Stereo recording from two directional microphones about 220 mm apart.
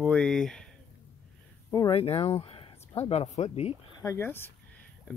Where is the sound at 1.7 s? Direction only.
20° left (ahead or behind).